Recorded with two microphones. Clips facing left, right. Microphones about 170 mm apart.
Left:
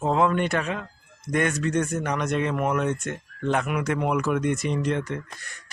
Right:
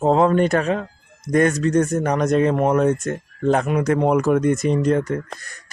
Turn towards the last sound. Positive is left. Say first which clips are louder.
# right 7 dB
turn(degrees=-40)  # may be behind; listen again after turning